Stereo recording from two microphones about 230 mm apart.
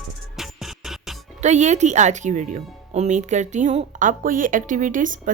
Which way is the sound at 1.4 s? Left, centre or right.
Right.